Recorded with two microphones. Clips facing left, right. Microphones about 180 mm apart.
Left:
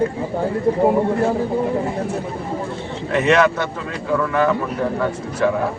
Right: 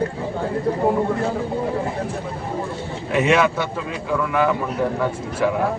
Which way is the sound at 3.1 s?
10° right (ahead or behind).